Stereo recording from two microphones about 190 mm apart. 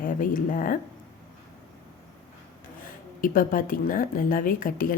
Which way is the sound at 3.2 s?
45° left (ahead or behind).